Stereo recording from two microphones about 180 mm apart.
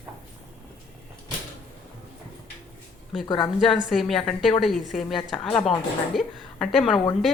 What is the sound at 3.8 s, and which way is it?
A woman's voice, centre (ahead or behind).